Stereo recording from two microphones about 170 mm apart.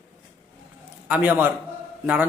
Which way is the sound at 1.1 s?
10° right (ahead or behind).